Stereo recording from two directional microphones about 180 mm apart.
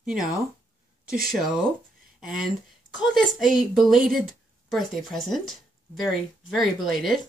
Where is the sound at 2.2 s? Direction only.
5° right (ahead or behind).